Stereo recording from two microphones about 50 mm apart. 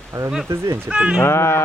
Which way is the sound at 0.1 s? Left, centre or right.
Right.